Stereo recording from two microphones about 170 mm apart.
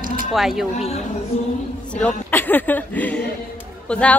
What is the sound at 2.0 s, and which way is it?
A woman's voice, 10° left (ahead or behind).